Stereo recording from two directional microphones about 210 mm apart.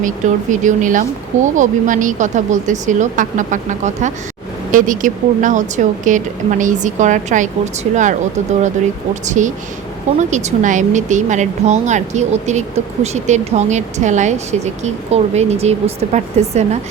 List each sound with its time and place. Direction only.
0.0 s speech: 35° right (ahead or behind)
9.2 s speech: 35° right (ahead or behind)